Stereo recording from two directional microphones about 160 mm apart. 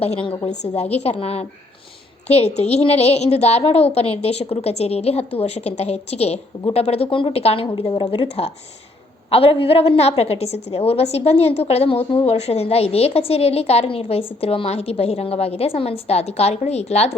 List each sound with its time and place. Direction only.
0.0 s a woman's voice: 35° left (ahead or behind)